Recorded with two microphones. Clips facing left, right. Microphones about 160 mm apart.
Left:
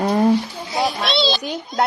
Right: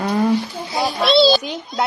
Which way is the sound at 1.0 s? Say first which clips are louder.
Right 7 dB; 40° right (ahead or behind).